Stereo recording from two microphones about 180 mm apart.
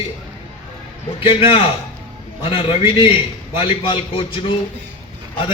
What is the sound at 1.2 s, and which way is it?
A man's voice, 30° left (ahead or behind).